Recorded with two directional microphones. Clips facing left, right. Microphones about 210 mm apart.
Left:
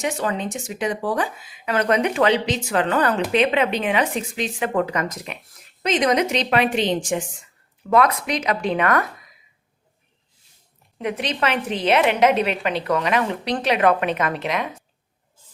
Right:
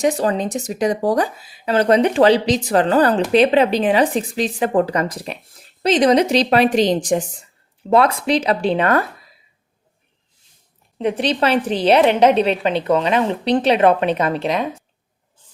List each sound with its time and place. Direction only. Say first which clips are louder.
0.0 s speech: right 6 dB; 35° right (ahead or behind)
10.9 s speech: right 6 dB; 30° right (ahead or behind)